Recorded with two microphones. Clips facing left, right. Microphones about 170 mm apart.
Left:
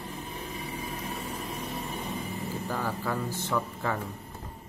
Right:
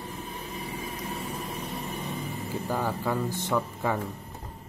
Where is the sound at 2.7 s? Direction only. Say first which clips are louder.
Right 4 dB; 10° right (ahead or behind).